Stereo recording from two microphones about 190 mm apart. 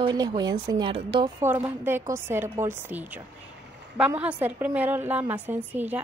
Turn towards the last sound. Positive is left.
turn(degrees=-10)  # may be behind; listen again after turning